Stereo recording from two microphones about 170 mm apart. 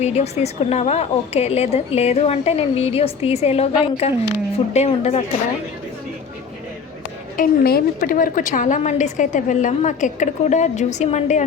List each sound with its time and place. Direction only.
0.0 s a woman's voice: 40° left (ahead or behind)
7.3 s a woman's voice: 60° left (ahead or behind); by 11.4 s 45° left (ahead or behind)